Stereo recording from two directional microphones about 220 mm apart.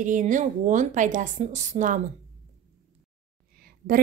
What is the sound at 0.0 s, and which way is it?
A woman's voice, 35° right (ahead or behind).